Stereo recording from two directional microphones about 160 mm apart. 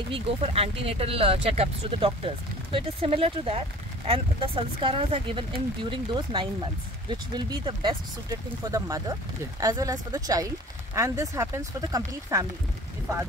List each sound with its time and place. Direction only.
0.1 s speech: 40° right (ahead or behind); by 12.4 s 20° right (ahead or behind)